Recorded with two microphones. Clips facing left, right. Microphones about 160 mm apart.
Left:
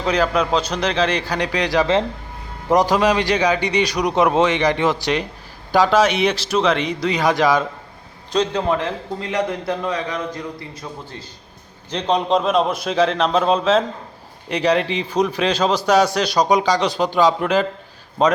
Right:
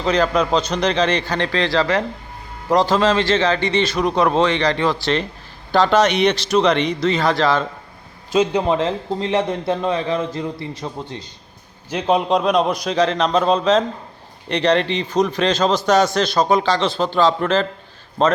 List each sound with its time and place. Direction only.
0.0 s a man's voice: 5° left (ahead or behind)
8.3 s a man's voice: 5° right (ahead or behind)
8.6 s a man's voice: 25° right (ahead or behind)
11.9 s a man's voice: 5° right (ahead or behind); by 18.3 s 10° left (ahead or behind)